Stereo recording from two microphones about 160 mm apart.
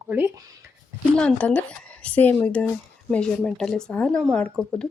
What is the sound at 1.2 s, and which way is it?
Speech, 5° left (ahead or behind).